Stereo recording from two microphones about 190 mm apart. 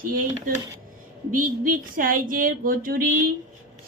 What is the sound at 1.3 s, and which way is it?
A woman's voice, 45° right (ahead or behind).